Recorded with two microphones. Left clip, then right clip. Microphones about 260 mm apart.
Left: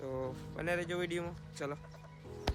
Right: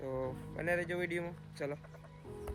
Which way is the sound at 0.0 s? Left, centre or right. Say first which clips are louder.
Right 1 dB; centre.